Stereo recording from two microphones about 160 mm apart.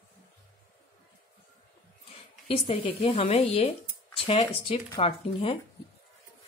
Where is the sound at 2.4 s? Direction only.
35° left (ahead or behind).